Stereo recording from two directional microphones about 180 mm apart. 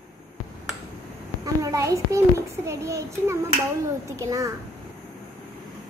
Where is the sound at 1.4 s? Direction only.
20° right (ahead or behind).